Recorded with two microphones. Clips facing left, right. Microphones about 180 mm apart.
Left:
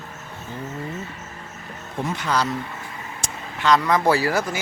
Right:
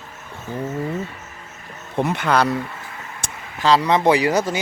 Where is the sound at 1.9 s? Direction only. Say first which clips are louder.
Right 5 dB; 60° right (ahead or behind).